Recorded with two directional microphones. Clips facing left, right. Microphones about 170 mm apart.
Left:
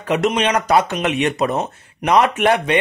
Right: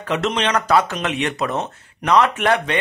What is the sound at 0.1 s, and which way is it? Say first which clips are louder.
Speech: left 3 dB; 15° left (ahead or behind).